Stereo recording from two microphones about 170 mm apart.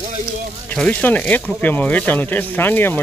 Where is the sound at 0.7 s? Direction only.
5° left (ahead or behind).